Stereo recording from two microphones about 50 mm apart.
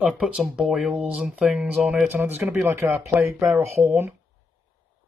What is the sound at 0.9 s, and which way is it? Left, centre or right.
Speech, right.